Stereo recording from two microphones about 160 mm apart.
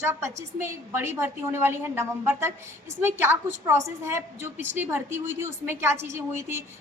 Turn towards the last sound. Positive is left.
turn(degrees=-15)  # may be behind; listen again after turning